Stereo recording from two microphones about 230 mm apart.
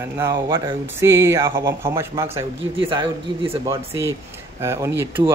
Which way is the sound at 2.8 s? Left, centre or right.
Right.